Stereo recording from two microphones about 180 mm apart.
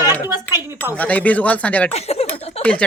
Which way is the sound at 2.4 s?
35° left (ahead or behind).